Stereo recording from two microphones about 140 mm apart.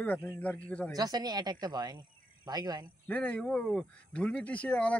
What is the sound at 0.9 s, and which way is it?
Speech, 30° right (ahead or behind).